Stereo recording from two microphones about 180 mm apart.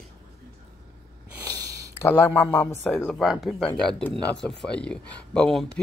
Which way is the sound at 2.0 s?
10° left (ahead or behind).